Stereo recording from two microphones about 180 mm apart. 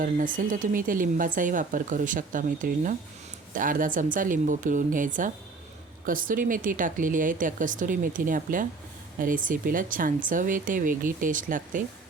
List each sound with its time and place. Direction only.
0.0 s speech: 50° right (ahead or behind)